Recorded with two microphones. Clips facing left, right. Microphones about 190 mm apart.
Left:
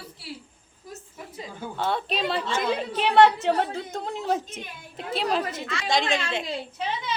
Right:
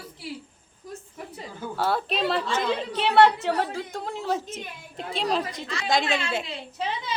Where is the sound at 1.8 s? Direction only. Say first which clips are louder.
Right 2 dB; centre (ahead or behind).